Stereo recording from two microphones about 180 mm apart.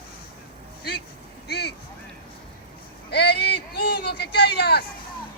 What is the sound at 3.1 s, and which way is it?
Speech, 65° left (ahead or behind).